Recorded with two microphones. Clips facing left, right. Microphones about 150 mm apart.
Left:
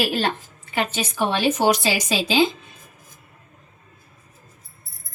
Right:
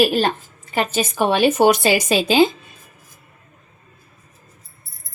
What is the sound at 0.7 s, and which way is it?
A woman's voice, 45° right (ahead or behind).